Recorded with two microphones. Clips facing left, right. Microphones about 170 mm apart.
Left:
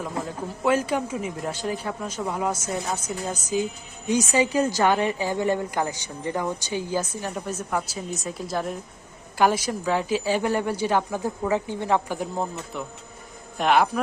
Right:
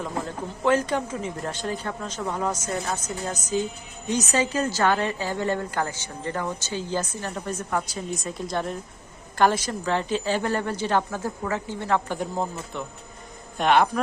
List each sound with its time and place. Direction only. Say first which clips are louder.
0.6 s a woman's voice: even; 10° left (ahead or behind)
12.1 s speech: even; 5° left (ahead or behind)